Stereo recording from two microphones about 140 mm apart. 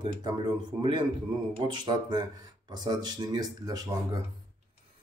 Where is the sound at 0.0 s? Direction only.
30° right (ahead or behind).